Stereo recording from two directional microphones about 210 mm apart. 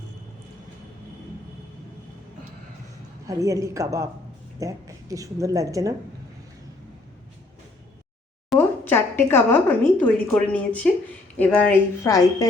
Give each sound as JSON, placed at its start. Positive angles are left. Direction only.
{"t": 3.2, "sound": "speech", "side_deg": -15}
{"t": 8.4, "sound": "a woman's voice", "side_deg": 10}